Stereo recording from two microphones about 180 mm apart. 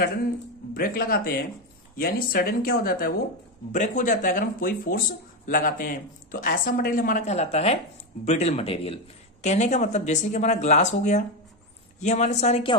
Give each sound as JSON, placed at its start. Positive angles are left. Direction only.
{"t": 0.7, "sound": "speech", "side_deg": 50}
{"t": 3.7, "sound": "a man's voice", "side_deg": 45}